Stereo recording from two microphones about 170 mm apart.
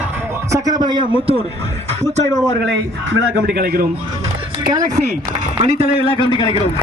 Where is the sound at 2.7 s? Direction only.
75° right (ahead or behind).